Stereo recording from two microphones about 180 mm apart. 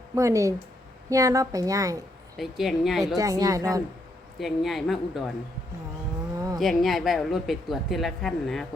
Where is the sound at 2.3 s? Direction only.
Centre (ahead or behind).